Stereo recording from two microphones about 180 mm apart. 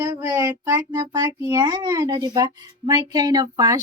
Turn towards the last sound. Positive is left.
turn(degrees=-20)  # may be behind; listen again after turning